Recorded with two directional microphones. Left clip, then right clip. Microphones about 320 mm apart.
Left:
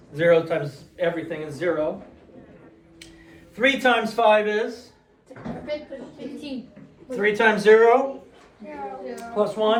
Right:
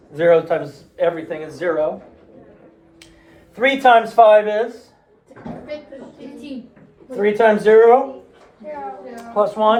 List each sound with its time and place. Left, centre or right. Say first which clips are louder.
0.1 s a man's voice: right 4 dB; centre
3.5 s speech: right 7 dB; centre
7.2 s speech: right 5 dB; centre
9.3 s a man's voice: right 6 dB; right